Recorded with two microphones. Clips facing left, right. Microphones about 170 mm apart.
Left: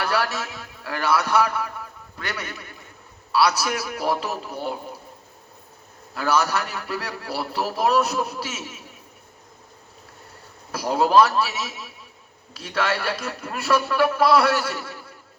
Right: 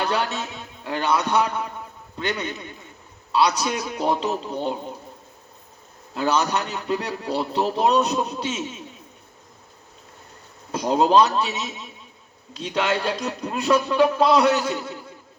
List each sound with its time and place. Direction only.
0.0 s a man's voice: 20° right (ahead or behind)
6.1 s a man's voice: 20° right (ahead or behind)
10.7 s a man's voice: 20° right (ahead or behind)